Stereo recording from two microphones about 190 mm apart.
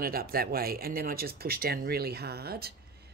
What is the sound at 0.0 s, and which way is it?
Speech, 50° right (ahead or behind).